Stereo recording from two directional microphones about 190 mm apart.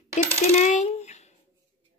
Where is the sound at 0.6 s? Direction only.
40° left (ahead or behind).